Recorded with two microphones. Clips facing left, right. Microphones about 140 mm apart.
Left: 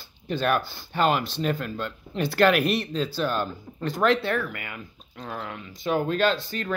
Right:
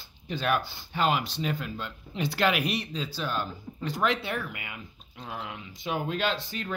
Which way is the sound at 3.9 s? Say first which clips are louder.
Left 6 dB; 10° right (ahead or behind).